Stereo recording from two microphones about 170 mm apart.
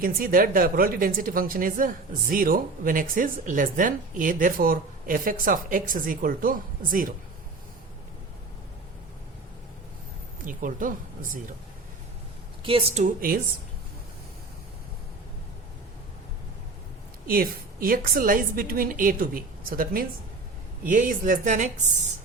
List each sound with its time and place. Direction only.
0.0 s a woman's voice: 55° right (ahead or behind)
10.4 s a woman's voice: 50° right (ahead or behind)
12.6 s a woman's voice: 30° right (ahead or behind); by 13.4 s 50° right (ahead or behind)
17.2 s a woman's voice: 60° right (ahead or behind)